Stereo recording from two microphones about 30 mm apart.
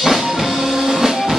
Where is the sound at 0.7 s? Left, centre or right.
Centre.